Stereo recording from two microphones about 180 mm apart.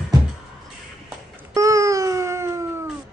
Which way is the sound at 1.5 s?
20° right (ahead or behind).